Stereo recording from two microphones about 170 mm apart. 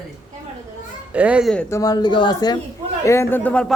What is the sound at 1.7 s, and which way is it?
Speech, 20° left (ahead or behind).